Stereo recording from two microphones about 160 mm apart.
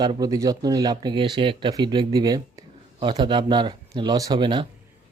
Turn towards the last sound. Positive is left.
turn(degrees=-30)  # may be behind; listen again after turning